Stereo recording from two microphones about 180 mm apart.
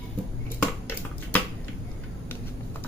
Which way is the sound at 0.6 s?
10° left (ahead or behind).